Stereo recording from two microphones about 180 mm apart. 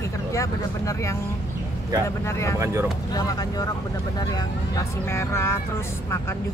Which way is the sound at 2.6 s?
15° right (ahead or behind).